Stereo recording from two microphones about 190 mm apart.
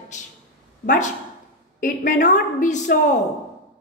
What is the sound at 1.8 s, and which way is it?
A woman's voice, 45° left (ahead or behind).